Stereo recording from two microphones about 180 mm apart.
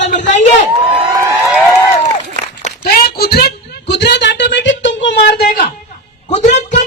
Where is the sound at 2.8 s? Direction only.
60° left (ahead or behind).